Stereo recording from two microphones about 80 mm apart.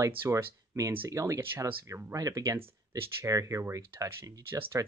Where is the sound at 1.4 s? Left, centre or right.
Right.